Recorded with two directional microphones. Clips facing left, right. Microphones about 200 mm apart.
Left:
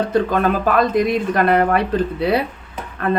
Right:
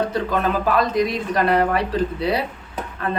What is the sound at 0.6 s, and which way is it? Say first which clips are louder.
Speech: left 3 dB; 55° left (ahead or behind).